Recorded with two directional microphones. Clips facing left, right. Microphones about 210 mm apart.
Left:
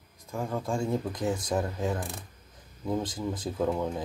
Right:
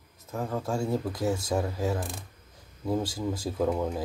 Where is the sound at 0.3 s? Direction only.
5° right (ahead or behind).